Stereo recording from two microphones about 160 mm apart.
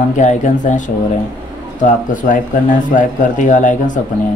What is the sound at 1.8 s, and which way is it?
Speech, 55° left (ahead or behind).